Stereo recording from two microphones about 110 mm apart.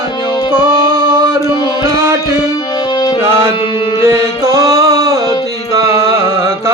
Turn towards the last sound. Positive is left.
turn(degrees=-25)  # may be behind; listen again after turning